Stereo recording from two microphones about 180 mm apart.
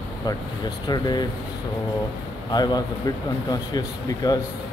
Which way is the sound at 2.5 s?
20° left (ahead or behind).